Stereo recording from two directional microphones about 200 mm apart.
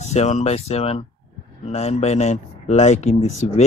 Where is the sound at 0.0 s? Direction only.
35° left (ahead or behind).